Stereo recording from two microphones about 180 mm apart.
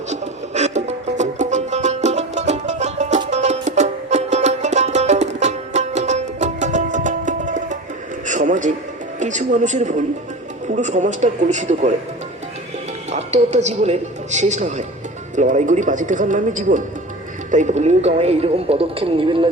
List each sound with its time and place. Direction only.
0.1 s music: 40° right (ahead or behind)
8.3 s a sound: 45° right (ahead or behind)
9.1 s speech: 40° right (ahead or behind)
13.1 s a woman's voice: 40° right (ahead or behind)